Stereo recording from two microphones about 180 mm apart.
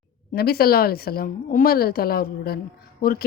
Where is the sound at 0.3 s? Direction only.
60° left (ahead or behind).